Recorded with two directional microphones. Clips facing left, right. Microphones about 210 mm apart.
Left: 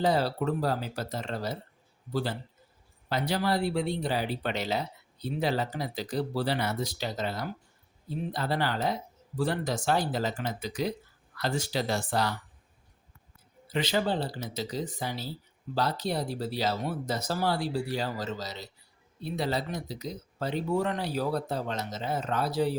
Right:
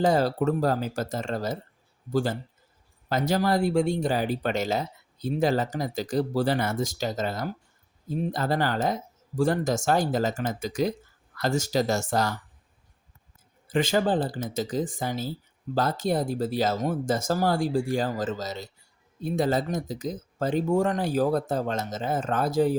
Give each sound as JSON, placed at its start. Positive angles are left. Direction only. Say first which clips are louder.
{"t": 0.0, "sound": "speech", "louder": "right 4 dB", "side_deg": -45}
{"t": 13.7, "sound": "speech", "louder": "right 5 dB", "side_deg": -50}